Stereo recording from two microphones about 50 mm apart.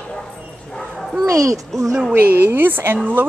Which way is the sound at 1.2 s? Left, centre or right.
Right.